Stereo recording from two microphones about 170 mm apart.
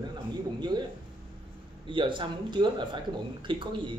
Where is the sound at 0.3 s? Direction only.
25° right (ahead or behind).